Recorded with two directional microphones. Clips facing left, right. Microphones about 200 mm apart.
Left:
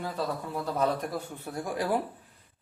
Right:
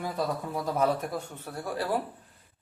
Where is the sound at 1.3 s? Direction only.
15° left (ahead or behind).